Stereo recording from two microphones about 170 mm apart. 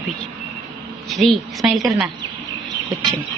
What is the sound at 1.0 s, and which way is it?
A woman's voice, centre (ahead or behind).